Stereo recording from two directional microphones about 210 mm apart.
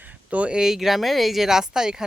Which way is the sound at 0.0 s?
5° right (ahead or behind).